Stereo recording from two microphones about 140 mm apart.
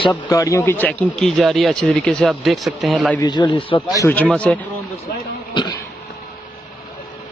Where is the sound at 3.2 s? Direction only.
30° left (ahead or behind).